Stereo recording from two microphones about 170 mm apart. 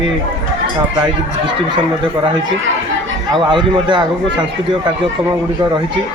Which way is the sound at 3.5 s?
30° right (ahead or behind).